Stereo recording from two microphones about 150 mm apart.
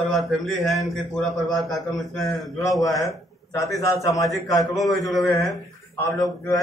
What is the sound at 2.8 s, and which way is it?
A man's voice, 20° left (ahead or behind).